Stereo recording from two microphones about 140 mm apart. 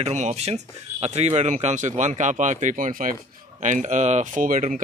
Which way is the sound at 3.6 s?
60° right (ahead or behind).